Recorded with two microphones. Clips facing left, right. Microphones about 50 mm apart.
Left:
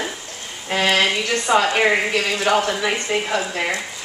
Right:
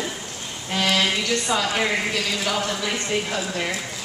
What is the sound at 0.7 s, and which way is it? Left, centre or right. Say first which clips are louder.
Speech: left 4 dB; left.